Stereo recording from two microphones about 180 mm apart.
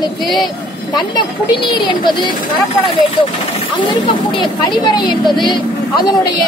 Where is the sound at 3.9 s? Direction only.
25° left (ahead or behind).